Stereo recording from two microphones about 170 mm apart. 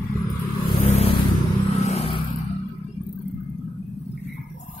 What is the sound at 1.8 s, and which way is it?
Vehicle, 40° left (ahead or behind).